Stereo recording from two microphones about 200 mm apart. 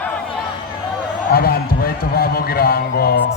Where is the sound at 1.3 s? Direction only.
50° left (ahead or behind).